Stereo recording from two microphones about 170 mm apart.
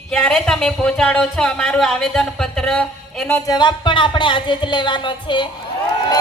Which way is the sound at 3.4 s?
25° left (ahead or behind).